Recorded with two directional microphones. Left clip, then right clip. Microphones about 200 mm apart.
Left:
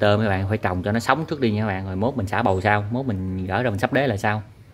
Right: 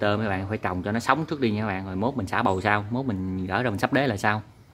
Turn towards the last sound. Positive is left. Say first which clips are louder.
# left 2 dB
turn(degrees=-5)  # may be behind; listen again after turning